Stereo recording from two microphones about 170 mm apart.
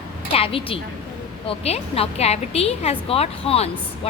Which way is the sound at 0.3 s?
30° left (ahead or behind).